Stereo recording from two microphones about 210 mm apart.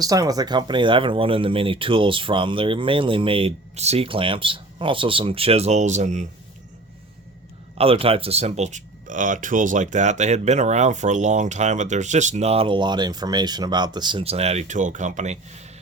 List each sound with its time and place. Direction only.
0.0 s speech: 15° right (ahead or behind); by 6.2 s 35° right (ahead or behind)
7.8 s speech: 25° right (ahead or behind)